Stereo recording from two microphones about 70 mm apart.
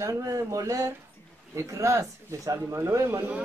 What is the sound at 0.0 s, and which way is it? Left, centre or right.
A man's voice, right.